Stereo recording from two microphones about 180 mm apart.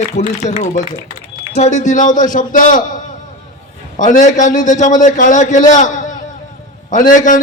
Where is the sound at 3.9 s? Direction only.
45° left (ahead or behind).